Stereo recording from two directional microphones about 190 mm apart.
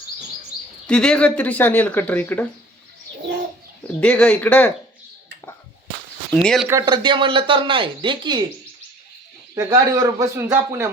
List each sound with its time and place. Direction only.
0.9 s speech: 5° left (ahead or behind)
4.0 s speech: 5° left (ahead or behind)
6.3 s speech: 5° left (ahead or behind)
6.7 s speech: 20° right (ahead or behind)
9.6 s speech: 20° right (ahead or behind)